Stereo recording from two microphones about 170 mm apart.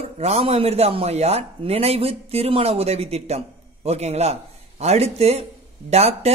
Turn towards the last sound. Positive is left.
turn(degrees=-40)  # may be behind; listen again after turning